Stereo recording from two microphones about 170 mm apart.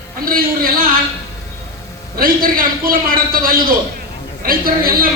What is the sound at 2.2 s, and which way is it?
A woman's voice, 55° right (ahead or behind).